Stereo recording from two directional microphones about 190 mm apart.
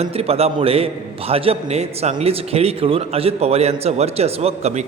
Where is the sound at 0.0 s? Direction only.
30° right (ahead or behind).